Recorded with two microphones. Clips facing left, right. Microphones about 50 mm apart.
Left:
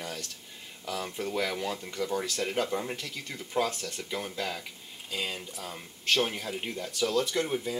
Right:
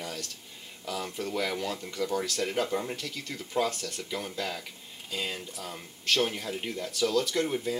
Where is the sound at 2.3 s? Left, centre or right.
Centre.